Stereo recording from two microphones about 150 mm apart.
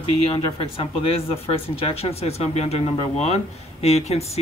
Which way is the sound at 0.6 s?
40° left (ahead or behind).